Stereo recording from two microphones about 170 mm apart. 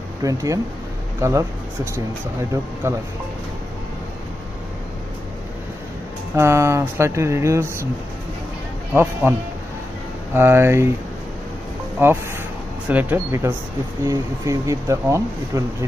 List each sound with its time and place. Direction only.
0.2 s speech: 20° right (ahead or behind)
2.8 s speech: 15° right (ahead or behind)
6.3 s speech: 15° right (ahead or behind)
8.9 s speech: 15° right (ahead or behind)
10.3 s speech: 15° right (ahead or behind)
12.0 s speech: 15° right (ahead or behind)